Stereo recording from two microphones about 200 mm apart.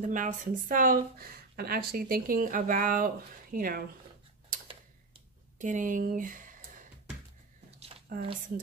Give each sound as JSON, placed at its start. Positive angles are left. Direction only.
{"t": 0.1, "sound": "speech", "side_deg": -40}
{"t": 5.6, "sound": "speech", "side_deg": -40}
{"t": 8.1, "sound": "speech", "side_deg": -45}